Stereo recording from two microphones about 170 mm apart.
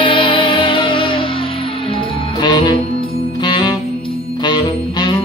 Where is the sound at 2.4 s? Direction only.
25° left (ahead or behind).